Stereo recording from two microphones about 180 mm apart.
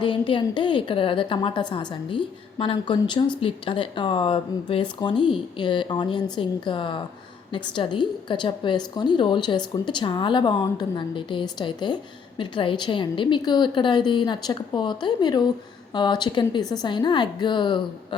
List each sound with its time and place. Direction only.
0.0 s a woman's voice: 25° left (ahead or behind)